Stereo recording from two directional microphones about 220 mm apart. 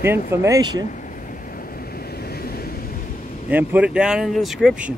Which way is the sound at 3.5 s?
5° right (ahead or behind).